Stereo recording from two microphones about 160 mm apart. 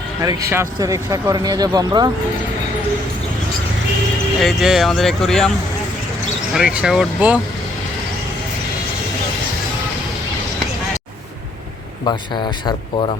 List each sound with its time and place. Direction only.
0.2 s speech: 20° right (ahead or behind)
4.4 s speech: centre (ahead or behind)
6.5 s speech: 5° right (ahead or behind)
12.1 s speech: 25° left (ahead or behind)